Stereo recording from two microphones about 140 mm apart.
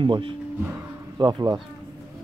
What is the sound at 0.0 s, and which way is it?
Speech, 35° right (ahead or behind).